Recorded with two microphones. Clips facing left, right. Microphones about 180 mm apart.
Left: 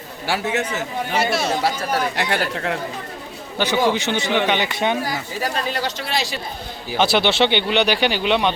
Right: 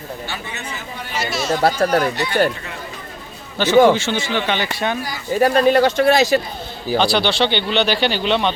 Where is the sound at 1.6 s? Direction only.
55° right (ahead or behind).